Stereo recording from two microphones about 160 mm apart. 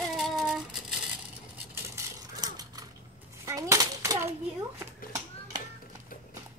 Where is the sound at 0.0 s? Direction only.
Centre (ahead or behind).